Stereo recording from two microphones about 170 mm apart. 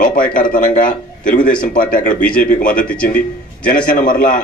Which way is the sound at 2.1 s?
50° left (ahead or behind).